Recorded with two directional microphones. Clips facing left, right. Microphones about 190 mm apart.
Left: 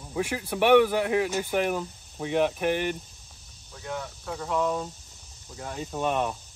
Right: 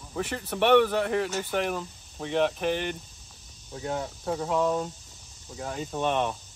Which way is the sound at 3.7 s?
30° right (ahead or behind).